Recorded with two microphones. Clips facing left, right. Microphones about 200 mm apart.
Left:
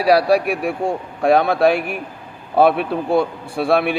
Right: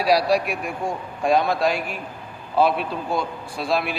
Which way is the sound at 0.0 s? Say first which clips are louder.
Left 5 dB; 60° left (ahead or behind).